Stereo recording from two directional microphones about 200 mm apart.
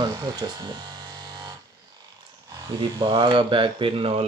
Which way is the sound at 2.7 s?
20° right (ahead or behind).